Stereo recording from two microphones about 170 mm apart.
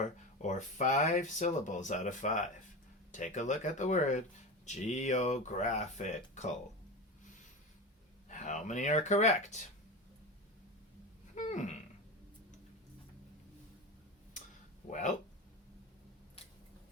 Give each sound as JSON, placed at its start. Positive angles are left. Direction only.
{"t": 0.0, "sound": "speech", "side_deg": 45}
{"t": 8.3, "sound": "speech", "side_deg": 45}
{"t": 11.3, "sound": "a sound", "side_deg": 45}
{"t": 14.8, "sound": "speech", "side_deg": 45}